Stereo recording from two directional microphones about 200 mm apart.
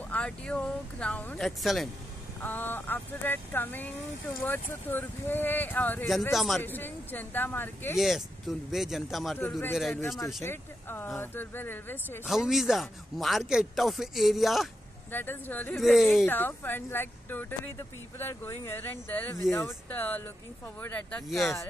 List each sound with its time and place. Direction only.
0.1 s speech: 5° left (ahead or behind)
7.9 s speech: centre (ahead or behind)
9.4 s speech: 10° left (ahead or behind)
12.3 s speech: centre (ahead or behind)
15.0 s speech: 10° left (ahead or behind)
16.3 s speech: 10° left (ahead or behind)